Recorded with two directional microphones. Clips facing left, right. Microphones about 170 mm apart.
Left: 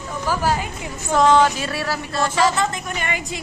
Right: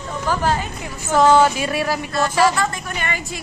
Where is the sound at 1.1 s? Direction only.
5° right (ahead or behind).